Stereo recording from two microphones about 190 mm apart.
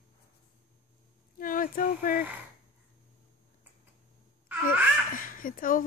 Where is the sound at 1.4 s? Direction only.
45° left (ahead or behind).